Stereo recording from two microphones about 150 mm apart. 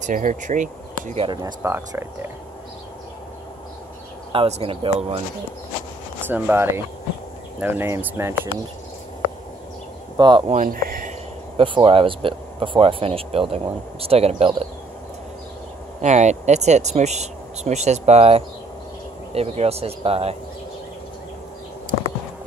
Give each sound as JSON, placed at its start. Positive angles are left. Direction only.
{"t": 0.0, "sound": "speech", "side_deg": -60}
{"t": 1.2, "sound": "speech", "side_deg": -30}
{"t": 1.6, "sound": "speech", "side_deg": -15}
{"t": 4.3, "sound": "speech", "side_deg": -40}
{"t": 6.2, "sound": "speech", "side_deg": -10}
{"t": 10.1, "sound": "speech", "side_deg": -30}
{"t": 10.5, "sound": "speech", "side_deg": -65}
{"t": 11.5, "sound": "speech", "side_deg": -35}
{"t": 16.0, "sound": "speech", "side_deg": -50}